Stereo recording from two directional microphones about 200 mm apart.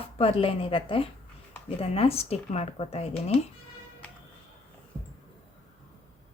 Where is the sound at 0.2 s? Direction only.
30° left (ahead or behind).